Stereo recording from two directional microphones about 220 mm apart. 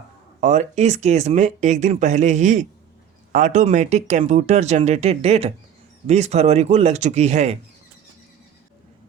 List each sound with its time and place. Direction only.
0.3 s speech: 35° right (ahead or behind)